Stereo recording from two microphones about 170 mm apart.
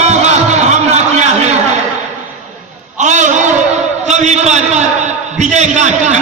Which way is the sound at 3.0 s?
45° right (ahead or behind).